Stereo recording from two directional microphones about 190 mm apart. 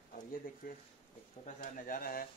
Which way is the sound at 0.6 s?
45° left (ahead or behind).